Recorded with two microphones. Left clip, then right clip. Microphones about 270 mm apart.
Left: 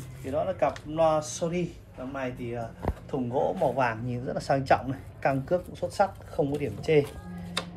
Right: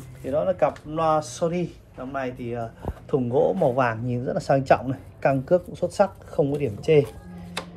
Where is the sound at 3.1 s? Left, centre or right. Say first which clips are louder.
Right 7 dB; right.